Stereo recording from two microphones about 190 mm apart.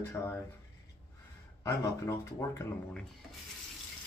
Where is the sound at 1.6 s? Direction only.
15° left (ahead or behind).